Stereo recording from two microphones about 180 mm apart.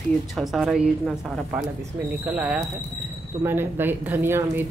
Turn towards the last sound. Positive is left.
turn(degrees=-15)  # may be behind; listen again after turning